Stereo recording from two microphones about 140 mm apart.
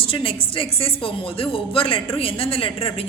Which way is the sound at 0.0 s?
40° left (ahead or behind).